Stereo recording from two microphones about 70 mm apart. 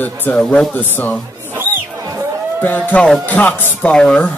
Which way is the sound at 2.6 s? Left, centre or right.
Left.